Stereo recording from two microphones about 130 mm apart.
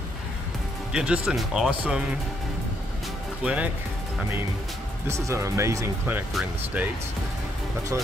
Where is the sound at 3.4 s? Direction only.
10° right (ahead or behind).